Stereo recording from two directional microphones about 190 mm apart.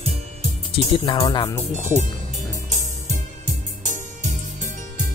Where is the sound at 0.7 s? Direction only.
25° left (ahead or behind).